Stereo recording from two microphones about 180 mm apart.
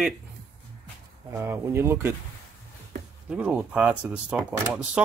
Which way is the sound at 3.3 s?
5° right (ahead or behind).